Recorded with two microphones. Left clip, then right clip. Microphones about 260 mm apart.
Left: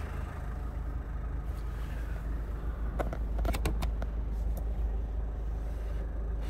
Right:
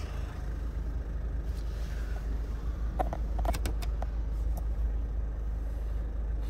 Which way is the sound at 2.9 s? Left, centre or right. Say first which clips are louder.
Right 3 dB; left.